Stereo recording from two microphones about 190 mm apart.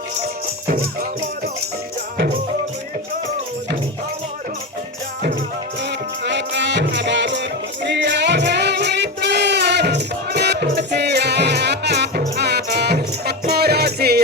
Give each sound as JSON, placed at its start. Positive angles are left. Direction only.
{"t": 5.8, "sound": "music", "side_deg": -65}